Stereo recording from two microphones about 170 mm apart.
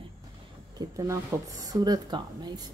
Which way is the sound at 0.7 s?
20° right (ahead or behind).